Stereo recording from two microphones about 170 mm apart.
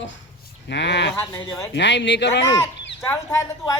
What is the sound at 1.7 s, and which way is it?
Speech, 90° left.